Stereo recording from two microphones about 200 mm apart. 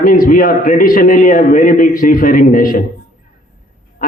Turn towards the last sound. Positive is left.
turn(degrees=45)  # may be behind; listen again after turning